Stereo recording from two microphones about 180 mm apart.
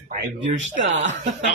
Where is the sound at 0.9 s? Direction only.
90° right.